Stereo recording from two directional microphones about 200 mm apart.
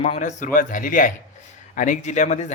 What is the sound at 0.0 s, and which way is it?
Speech, 35° left (ahead or behind).